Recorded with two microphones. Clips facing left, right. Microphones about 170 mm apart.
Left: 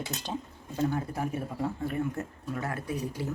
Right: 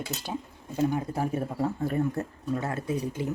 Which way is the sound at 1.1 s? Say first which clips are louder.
Right 4 dB; 35° right (ahead or behind).